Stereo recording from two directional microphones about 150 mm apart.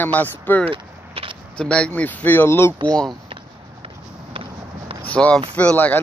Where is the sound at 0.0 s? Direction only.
10° left (ahead or behind).